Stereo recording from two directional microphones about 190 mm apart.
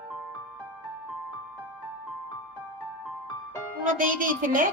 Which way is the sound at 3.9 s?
45° right (ahead or behind).